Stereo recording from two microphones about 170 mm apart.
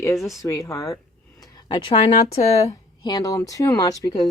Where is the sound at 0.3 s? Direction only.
20° left (ahead or behind); by 2.6 s 40° left (ahead or behind).